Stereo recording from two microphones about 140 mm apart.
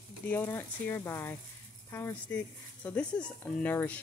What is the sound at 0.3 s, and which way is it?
Speech, 15° left (ahead or behind).